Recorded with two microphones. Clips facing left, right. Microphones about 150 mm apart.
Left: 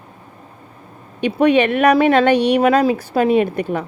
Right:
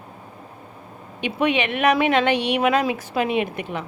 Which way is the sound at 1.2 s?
40° left (ahead or behind).